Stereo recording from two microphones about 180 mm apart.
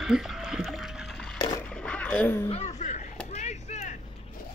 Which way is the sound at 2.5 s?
40° left (ahead or behind).